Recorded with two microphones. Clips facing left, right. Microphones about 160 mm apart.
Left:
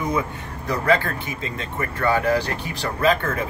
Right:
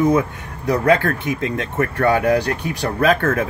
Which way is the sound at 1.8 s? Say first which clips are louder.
Right 4 dB; 60° right (ahead or behind).